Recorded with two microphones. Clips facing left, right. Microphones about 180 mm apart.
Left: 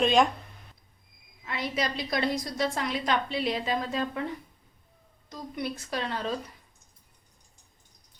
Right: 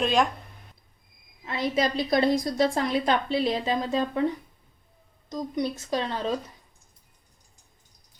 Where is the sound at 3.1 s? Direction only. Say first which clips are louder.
Right 1 dB; 30° right (ahead or behind).